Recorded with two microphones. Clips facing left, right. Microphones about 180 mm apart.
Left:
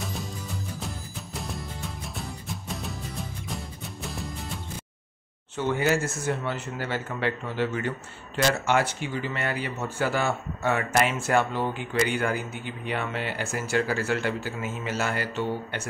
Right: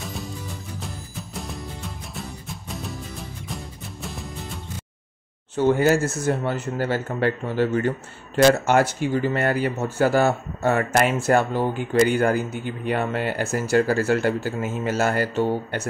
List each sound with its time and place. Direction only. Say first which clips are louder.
0.7 s music: right 1 dB; centre (ahead or behind)
5.6 s speech: right 6 dB; 40° right (ahead or behind)